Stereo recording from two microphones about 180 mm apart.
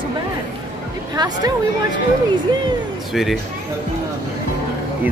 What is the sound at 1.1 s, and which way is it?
Speech, 20° right (ahead or behind).